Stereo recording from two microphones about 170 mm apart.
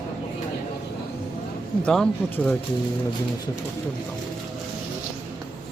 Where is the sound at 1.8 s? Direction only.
5° left (ahead or behind).